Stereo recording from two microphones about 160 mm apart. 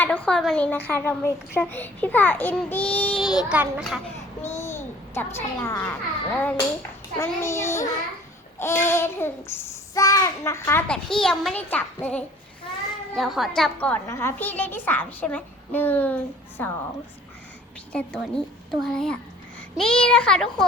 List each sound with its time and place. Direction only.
0.0 s child singing: 10° left (ahead or behind)
3.2 s a woman's voice: 5° right (ahead or behind)
4.4 s a child's voice: 15° left (ahead or behind)
7.2 s child singing: 15° left (ahead or behind)
13.1 s child singing: centre (ahead or behind)
17.9 s a woman's voice: 5° left (ahead or behind)